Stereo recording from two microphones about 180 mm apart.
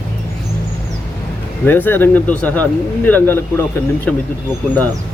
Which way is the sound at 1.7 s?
10° left (ahead or behind).